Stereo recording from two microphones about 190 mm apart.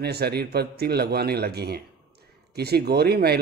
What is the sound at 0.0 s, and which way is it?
Speech, 60° right (ahead or behind).